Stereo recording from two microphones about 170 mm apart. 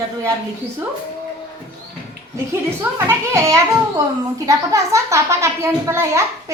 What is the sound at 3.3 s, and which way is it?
A child's voice, 20° right (ahead or behind).